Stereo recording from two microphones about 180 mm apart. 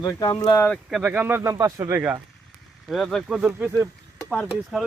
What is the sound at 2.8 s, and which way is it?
Speech, centre (ahead or behind).